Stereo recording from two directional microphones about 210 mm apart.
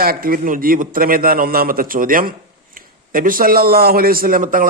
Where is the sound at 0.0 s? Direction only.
45° right (ahead or behind).